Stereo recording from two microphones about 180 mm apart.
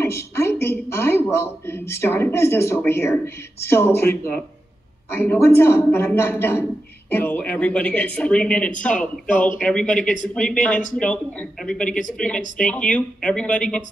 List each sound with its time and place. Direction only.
0.0 s a woman's voice: 15° left (ahead or behind)
5.1 s a woman's voice: 10° left (ahead or behind)
9.8 s speech: 45° left (ahead or behind)
10.3 s a woman's voice: 5° left (ahead or behind)